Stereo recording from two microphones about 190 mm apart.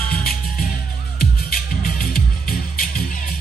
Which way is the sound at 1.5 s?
50° left (ahead or behind).